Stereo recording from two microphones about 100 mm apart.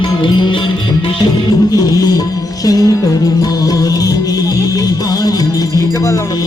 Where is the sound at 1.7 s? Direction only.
40° left (ahead or behind).